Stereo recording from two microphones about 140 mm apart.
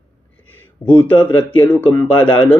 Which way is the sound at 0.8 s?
5° left (ahead or behind).